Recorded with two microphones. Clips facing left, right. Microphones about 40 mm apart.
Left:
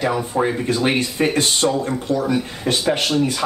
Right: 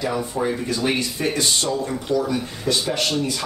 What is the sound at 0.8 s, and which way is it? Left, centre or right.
Speech, left.